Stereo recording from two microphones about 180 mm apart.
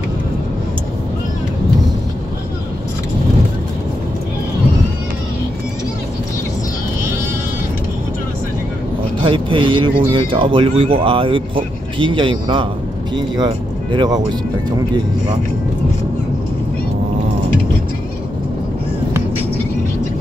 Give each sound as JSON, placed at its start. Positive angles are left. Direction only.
{"t": 9.2, "sound": "speech", "side_deg": -25}
{"t": 13.9, "sound": "speech", "side_deg": -20}